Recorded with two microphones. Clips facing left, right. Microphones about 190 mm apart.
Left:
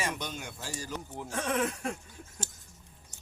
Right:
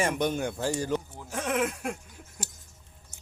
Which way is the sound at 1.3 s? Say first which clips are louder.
Right 2 dB; 10° right (ahead or behind).